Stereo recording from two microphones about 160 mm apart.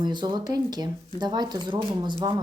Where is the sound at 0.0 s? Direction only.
30° right (ahead or behind).